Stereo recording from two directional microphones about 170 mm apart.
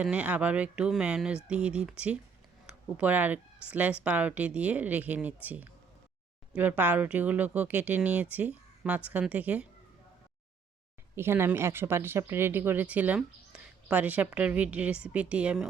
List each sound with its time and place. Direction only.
0.0 s speech: 5° right (ahead or behind)
11.1 s speech: 15° right (ahead or behind)